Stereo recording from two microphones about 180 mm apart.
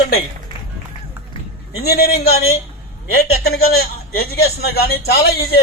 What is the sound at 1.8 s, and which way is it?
A man's voice, 60° left (ahead or behind).